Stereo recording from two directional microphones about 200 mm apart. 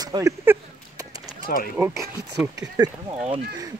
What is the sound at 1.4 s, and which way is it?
Speech, 45° left (ahead or behind).